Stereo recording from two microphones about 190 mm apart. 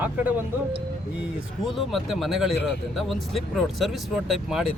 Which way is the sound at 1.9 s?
Centre (ahead or behind).